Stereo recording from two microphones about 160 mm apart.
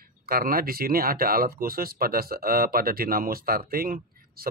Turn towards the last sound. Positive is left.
turn(degrees=-65)  # may be behind; listen again after turning